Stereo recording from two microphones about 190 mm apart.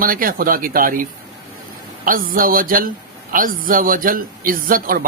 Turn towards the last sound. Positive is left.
turn(degrees=-50)  # may be behind; listen again after turning